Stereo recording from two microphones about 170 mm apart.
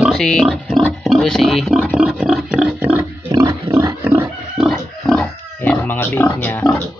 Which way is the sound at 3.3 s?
20° right (ahead or behind).